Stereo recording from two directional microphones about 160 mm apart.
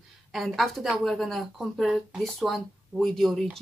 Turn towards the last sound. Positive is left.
turn(degrees=0)  # may be behind; listen again after turning